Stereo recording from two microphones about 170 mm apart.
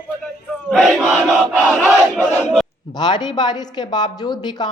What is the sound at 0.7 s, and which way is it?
Battle cry, centre (ahead or behind).